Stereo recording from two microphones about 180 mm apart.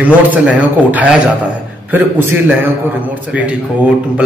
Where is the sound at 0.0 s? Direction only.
10° right (ahead or behind).